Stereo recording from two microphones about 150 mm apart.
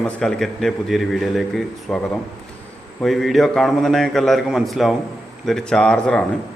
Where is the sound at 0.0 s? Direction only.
5° left (ahead or behind).